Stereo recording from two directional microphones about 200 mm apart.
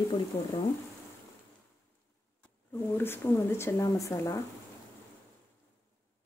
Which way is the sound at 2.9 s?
10° left (ahead or behind).